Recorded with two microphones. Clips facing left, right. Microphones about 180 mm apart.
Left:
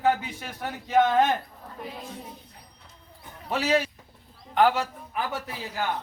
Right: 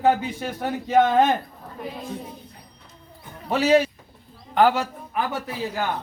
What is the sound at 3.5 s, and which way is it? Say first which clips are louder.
Speech: right 6 dB; 30° right (ahead or behind).